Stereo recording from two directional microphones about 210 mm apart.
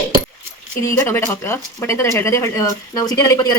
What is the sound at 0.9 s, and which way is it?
Speech, 10° left (ahead or behind).